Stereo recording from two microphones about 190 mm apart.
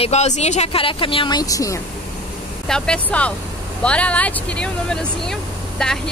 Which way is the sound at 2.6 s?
5° left (ahead or behind).